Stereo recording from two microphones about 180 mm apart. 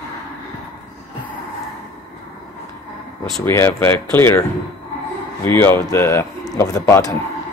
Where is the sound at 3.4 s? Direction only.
10° left (ahead or behind).